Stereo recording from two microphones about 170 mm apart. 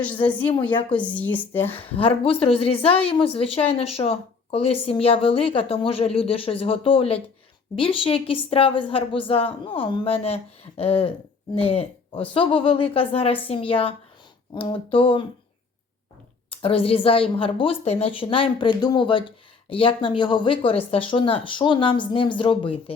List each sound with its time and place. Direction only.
0.3 s speech: 10° left (ahead or behind)
1.8 s a woman's voice: 35° left (ahead or behind)
16.5 s a woman's voice: 35° left (ahead or behind)